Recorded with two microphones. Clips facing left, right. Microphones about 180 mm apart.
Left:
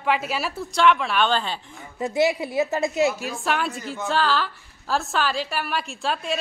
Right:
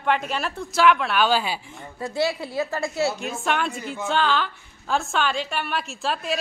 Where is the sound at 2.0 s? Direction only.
20° left (ahead or behind).